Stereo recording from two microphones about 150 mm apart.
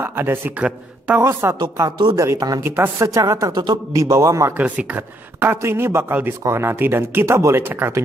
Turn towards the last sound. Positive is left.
turn(degrees=-15)  # may be behind; listen again after turning